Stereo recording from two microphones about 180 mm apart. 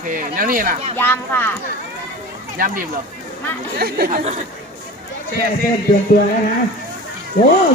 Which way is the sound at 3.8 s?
55° right (ahead or behind).